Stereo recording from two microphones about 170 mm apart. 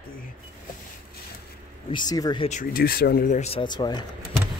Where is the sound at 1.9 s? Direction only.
20° left (ahead or behind).